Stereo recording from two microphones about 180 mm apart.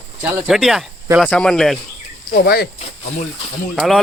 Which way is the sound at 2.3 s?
60° left (ahead or behind).